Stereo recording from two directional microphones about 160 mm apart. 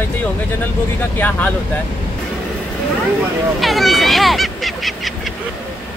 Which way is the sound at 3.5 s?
Centre (ahead or behind).